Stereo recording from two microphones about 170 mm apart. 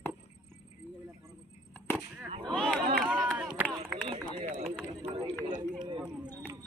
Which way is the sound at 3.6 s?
10° right (ahead or behind).